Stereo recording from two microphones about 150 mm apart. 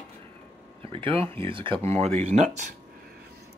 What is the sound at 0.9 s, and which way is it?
Speech, 35° right (ahead or behind).